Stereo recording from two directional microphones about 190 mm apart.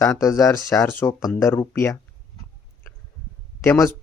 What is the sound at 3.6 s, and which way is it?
Speech, 10° left (ahead or behind).